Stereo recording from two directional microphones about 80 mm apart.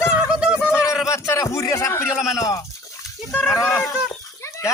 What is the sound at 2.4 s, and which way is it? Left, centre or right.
Speech, left.